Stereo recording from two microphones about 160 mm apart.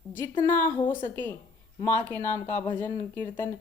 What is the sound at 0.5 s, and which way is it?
A woman's voice, 15° left (ahead or behind).